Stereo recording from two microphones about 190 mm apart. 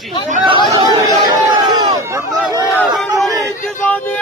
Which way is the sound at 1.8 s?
20° right (ahead or behind).